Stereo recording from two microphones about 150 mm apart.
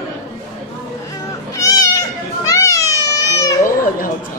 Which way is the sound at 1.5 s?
20° left (ahead or behind).